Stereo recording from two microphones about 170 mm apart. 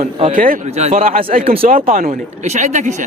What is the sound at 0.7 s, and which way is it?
Speech, 40° right (ahead or behind).